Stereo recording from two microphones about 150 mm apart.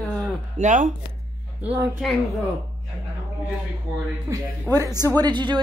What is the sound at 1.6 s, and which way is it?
Speech, 10° right (ahead or behind).